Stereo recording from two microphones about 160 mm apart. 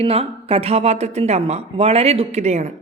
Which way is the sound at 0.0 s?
35° right (ahead or behind).